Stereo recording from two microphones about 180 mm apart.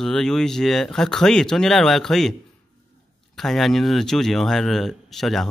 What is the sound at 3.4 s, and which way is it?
Speech, centre (ahead or behind).